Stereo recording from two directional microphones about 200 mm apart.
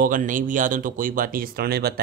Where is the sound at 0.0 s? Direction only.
40° right (ahead or behind).